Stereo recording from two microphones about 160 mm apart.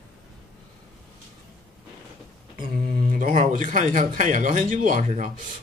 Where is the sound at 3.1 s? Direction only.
55° right (ahead or behind).